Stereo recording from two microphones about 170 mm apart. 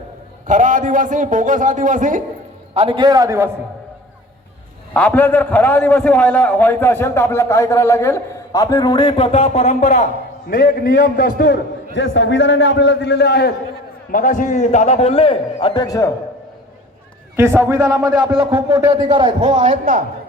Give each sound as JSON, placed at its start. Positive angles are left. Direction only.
{"t": 0.4, "sound": "a man's voice", "side_deg": -50}
{"t": 2.7, "sound": "a man's voice", "side_deg": -30}
{"t": 4.9, "sound": "a man's voice", "side_deg": 10}
{"t": 10.5, "sound": "a man's voice", "side_deg": 60}
{"t": 11.9, "sound": "a man's voice", "side_deg": 90}
{"t": 14.1, "sound": "a man's voice", "side_deg": 55}
{"t": 17.3, "sound": "a man's voice", "side_deg": -15}
{"t": 18.5, "sound": "a man's voice", "side_deg": -15}
{"t": 19.8, "sound": "a man's voice", "side_deg": -55}